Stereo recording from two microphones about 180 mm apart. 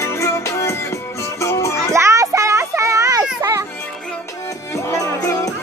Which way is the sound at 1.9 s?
15° right (ahead or behind).